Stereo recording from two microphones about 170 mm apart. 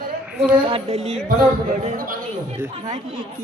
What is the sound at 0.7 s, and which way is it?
Speech, 40° right (ahead or behind).